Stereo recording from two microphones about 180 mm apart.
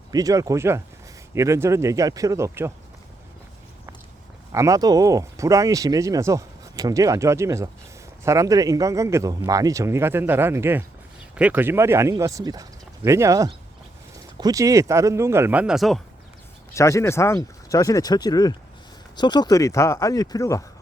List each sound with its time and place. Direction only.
0.1 s speech: 20° right (ahead or behind)
4.5 s speech: 15° right (ahead or behind); by 16.0 s centre (ahead or behind)
16.7 s speech: 15° left (ahead or behind)